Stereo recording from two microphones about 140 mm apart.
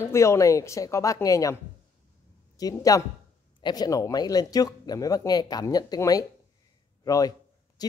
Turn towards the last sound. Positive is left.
turn(degrees=30)  # may be behind; listen again after turning